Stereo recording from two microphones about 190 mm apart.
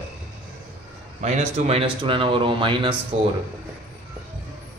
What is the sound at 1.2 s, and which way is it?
Speech, 35° right (ahead or behind).